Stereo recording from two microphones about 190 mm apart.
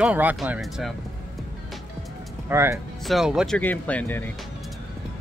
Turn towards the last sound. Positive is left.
turn(degrees=10)  # may be behind; listen again after turning